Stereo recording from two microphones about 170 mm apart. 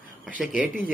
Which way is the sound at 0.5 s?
5° right (ahead or behind).